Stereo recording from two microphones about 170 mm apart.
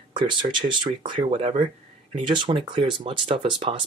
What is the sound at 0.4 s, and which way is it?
Speech, 30° right (ahead or behind).